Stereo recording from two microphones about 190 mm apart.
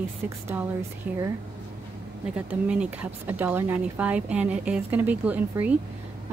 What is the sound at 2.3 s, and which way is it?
Speech, 5° right (ahead or behind).